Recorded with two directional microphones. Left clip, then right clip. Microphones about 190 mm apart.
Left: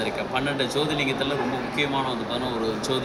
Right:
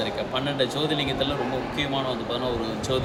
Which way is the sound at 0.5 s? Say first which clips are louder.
Even; 15° right (ahead or behind).